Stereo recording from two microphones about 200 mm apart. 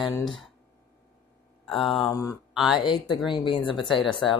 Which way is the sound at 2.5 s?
Centre (ahead or behind).